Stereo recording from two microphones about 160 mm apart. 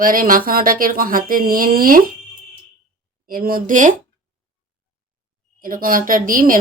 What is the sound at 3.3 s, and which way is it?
Speech, 65° right (ahead or behind).